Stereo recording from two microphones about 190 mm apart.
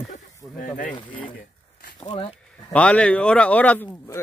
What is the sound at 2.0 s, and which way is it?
Speech, 25° left (ahead or behind).